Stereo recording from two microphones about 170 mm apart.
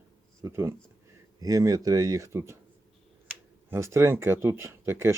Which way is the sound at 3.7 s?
15° right (ahead or behind).